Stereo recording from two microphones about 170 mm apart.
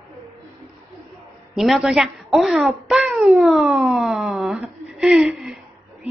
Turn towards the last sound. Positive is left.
turn(degrees=0)  # may be behind; listen again after turning